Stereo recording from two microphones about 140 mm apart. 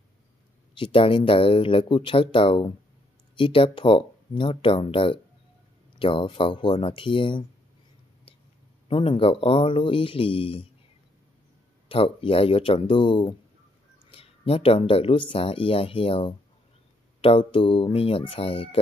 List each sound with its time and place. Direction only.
0.7 s speech: 40° left (ahead or behind)
8.8 s speech: 40° left (ahead or behind)
11.9 s speech: 40° left (ahead or behind)